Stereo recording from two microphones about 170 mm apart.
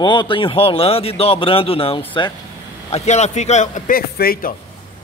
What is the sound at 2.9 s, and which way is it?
A man's voice, 40° left (ahead or behind).